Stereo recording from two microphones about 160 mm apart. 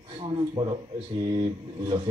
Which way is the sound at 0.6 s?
25° right (ahead or behind).